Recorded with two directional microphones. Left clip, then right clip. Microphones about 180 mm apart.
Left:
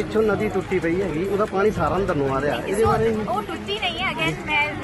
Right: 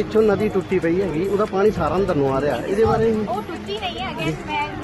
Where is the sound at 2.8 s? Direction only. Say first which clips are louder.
Even; centre (ahead or behind).